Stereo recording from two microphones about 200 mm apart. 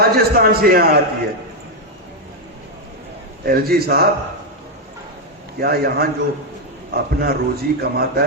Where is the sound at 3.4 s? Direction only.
50° right (ahead or behind).